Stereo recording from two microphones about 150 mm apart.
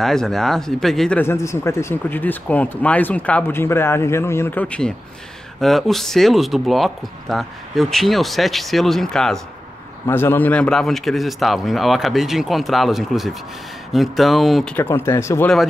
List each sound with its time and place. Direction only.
0.0 s speech: 5° left (ahead or behind)
10.0 s speech: 15° left (ahead or behind)
14.8 s speech: 15° left (ahead or behind)